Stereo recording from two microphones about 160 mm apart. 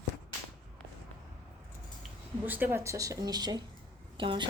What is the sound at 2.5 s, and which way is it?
Speech, 15° right (ahead or behind).